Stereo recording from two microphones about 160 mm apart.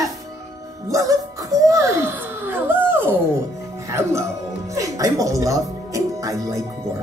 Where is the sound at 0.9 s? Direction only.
20° right (ahead or behind).